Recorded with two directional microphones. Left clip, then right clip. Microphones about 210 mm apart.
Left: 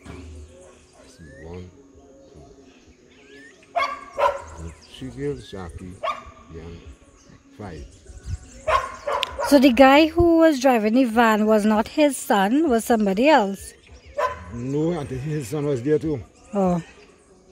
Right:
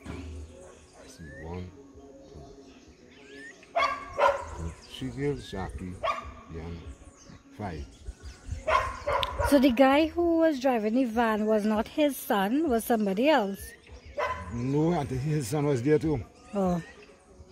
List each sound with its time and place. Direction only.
3.3 s dog: 55° left (ahead or behind)
4.9 s speech: 5° right (ahead or behind)
6.0 s dog: 50° left (ahead or behind)
6.5 s speech: 5° right (ahead or behind)
8.6 s bow-wow: 55° left (ahead or behind)
9.5 s speech: 30° left (ahead or behind)
14.2 s dog: 50° left (ahead or behind)
14.6 s speech: centre (ahead or behind)
16.5 s speech: 30° left (ahead or behind)